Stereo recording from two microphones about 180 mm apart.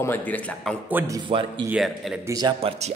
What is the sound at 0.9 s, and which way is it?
Speech, 10° right (ahead or behind).